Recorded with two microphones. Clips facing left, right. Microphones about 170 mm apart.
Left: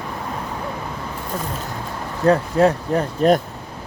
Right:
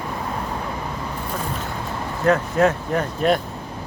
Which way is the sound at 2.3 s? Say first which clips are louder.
Left 2 dB; 30° left (ahead or behind).